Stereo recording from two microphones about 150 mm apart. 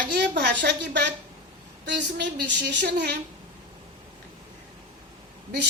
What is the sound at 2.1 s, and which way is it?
A woman's voice, 90° right.